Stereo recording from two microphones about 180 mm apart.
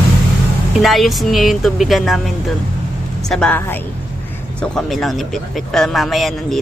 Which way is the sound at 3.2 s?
5° left (ahead or behind).